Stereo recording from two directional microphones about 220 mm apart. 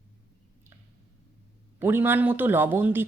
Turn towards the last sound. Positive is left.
turn(degrees=-10)  # may be behind; listen again after turning